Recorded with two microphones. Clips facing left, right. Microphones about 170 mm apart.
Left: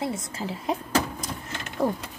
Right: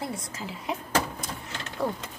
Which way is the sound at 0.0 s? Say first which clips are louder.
Left 4 dB; 25° left (ahead or behind).